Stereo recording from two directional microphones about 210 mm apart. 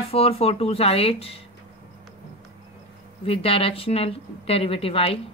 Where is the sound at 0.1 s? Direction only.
30° left (ahead or behind).